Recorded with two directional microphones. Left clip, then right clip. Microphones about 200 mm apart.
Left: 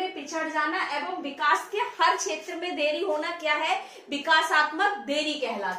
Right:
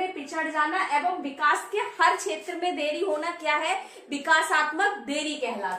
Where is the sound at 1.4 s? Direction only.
15° right (ahead or behind).